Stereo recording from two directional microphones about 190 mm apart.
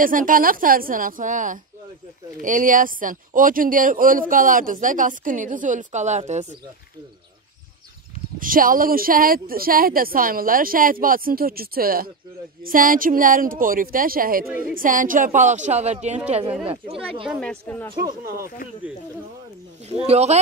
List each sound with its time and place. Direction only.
0.0 s speech: 45° right (ahead or behind)
8.4 s a man's voice: 45° right (ahead or behind); by 16.9 s 30° right (ahead or behind)
16.9 s speech: 5° right (ahead or behind)
18.2 s speech: 50° right (ahead or behind)
19.9 s a man's voice: 35° right (ahead or behind)